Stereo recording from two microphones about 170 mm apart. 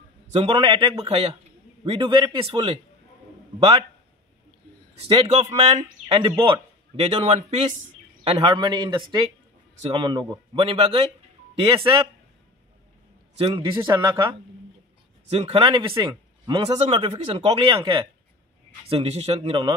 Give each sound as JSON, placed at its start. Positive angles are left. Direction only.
{"t": 0.3, "sound": "speech", "side_deg": -35}
{"t": 4.9, "sound": "a man's voice", "side_deg": -35}
{"t": 13.4, "sound": "speech", "side_deg": -25}
{"t": 15.3, "sound": "speech", "side_deg": -35}